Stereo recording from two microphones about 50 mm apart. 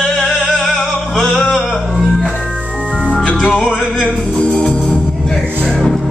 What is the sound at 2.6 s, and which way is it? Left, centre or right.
Organ, right.